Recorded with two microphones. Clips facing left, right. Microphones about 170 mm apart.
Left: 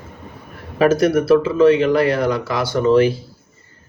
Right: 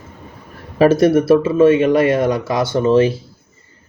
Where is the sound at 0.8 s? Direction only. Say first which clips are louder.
Right 3 dB; 25° right (ahead or behind).